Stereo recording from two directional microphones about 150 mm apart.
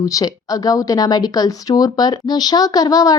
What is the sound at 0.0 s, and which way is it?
Speech, 25° left (ahead or behind).